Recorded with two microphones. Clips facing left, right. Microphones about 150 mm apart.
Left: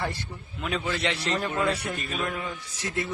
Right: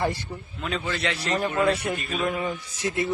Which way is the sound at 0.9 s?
20° left (ahead or behind).